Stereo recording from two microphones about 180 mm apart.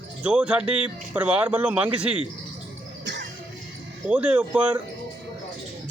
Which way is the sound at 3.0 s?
75° right (ahead or behind).